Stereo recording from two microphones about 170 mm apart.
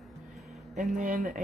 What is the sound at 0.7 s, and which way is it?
Speech, 50° right (ahead or behind).